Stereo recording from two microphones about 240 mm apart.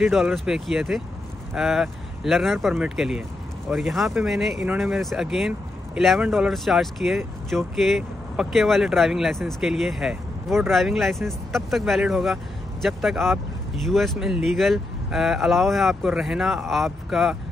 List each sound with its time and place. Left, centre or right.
0.0 s speech: centre